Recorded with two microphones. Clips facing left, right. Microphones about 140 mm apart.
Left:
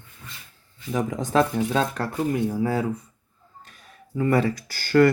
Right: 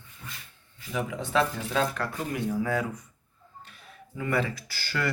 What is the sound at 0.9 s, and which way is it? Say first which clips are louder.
Speech: left 5 dB; 40° left (ahead or behind).